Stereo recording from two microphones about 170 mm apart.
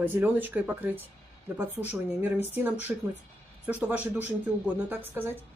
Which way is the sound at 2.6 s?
10° right (ahead or behind).